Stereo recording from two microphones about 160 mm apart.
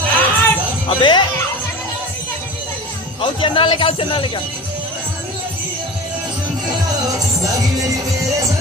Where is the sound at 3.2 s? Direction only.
35° left (ahead or behind).